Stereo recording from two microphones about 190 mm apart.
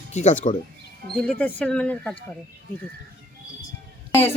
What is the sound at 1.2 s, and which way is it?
Speech, 10° left (ahead or behind).